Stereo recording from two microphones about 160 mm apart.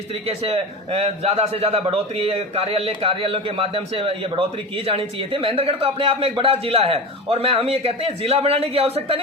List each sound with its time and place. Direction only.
0.3 s speech: 40° right (ahead or behind)